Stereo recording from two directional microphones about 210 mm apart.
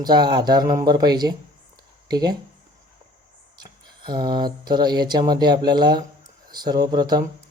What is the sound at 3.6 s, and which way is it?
Speech, 20° right (ahead or behind).